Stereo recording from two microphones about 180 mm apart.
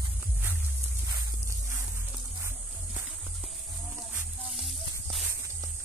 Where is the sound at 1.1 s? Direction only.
15° right (ahead or behind).